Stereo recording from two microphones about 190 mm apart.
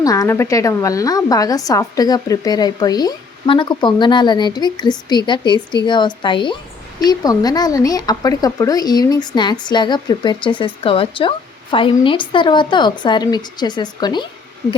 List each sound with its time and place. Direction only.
0.0 s speech: 20° left (ahead or behind)